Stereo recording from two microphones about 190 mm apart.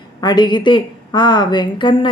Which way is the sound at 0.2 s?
20° left (ahead or behind).